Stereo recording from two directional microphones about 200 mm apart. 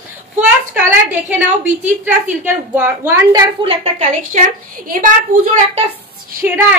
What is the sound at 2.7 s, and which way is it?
Speech, 10° right (ahead or behind).